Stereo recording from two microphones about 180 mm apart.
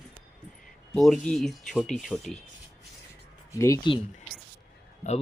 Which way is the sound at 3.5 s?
15° left (ahead or behind).